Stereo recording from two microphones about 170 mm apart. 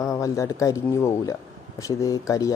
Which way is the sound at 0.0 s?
20° left (ahead or behind).